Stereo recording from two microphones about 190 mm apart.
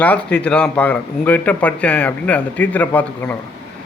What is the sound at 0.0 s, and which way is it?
Speech, 5° left (ahead or behind).